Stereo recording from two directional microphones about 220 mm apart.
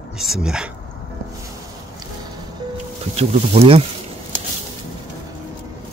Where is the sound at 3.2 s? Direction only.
25° right (ahead or behind).